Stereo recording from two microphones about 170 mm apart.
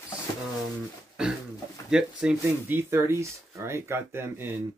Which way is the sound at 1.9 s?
5° right (ahead or behind).